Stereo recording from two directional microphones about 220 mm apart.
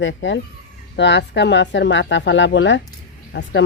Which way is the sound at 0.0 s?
60° left (ahead or behind).